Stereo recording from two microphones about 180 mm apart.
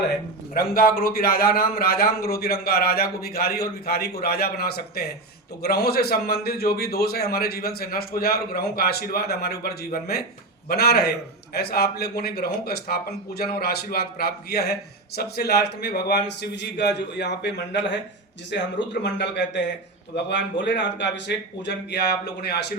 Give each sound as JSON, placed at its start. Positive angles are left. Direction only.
{"t": 0.5, "sound": "a man's voice", "side_deg": 55}